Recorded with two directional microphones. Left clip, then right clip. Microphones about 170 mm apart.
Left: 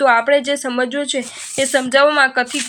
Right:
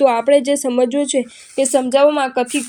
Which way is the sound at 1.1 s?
25° left (ahead or behind).